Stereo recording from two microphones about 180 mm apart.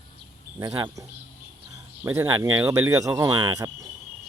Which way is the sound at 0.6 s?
20° right (ahead or behind).